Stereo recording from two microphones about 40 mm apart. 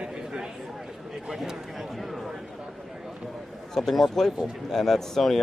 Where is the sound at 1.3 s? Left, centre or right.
Centre.